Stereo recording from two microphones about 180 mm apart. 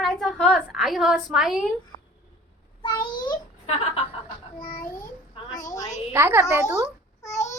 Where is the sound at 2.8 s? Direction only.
25° left (ahead or behind).